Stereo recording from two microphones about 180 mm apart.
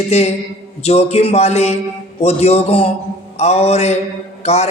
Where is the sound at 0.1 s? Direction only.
35° left (ahead or behind).